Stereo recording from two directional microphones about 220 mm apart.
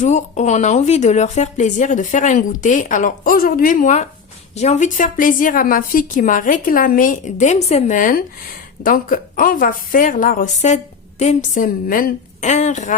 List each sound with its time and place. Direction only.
0.0 s speech: 30° left (ahead or behind)